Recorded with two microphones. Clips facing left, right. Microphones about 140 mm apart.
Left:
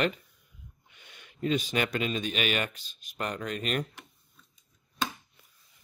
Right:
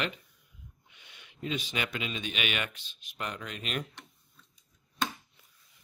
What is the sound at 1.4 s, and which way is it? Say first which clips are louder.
Speech: left 6 dB; 45° left (ahead or behind).